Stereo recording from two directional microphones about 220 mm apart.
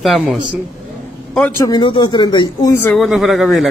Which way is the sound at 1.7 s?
20° left (ahead or behind).